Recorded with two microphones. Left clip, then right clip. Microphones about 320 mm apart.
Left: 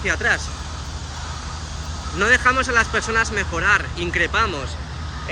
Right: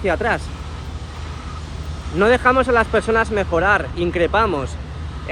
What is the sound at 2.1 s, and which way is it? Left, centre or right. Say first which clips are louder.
Speech: right 2 dB; centre.